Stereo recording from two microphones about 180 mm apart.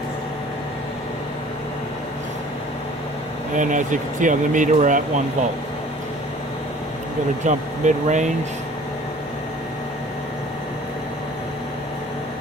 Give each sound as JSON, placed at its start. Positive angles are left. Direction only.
{"t": 3.5, "sound": "speech", "side_deg": -45}
{"t": 7.4, "sound": "speech", "side_deg": -40}